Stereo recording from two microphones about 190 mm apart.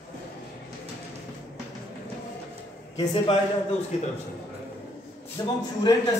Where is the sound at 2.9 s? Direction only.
30° left (ahead or behind).